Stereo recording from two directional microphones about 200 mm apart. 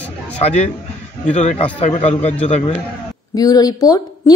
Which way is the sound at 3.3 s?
20° left (ahead or behind).